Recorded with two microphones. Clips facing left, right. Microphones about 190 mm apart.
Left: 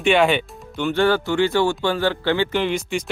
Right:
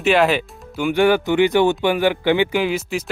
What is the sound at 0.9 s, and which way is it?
Speech, 15° right (ahead or behind).